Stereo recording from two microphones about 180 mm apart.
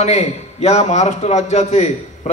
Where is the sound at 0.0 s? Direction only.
35° left (ahead or behind).